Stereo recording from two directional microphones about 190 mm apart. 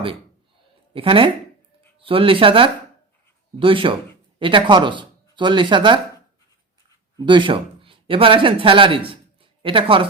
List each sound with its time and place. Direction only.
0.9 s speech: 30° right (ahead or behind)
7.2 s speech: 25° right (ahead or behind)